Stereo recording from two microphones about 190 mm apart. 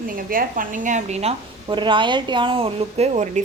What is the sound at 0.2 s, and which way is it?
A woman's voice, 50° right (ahead or behind).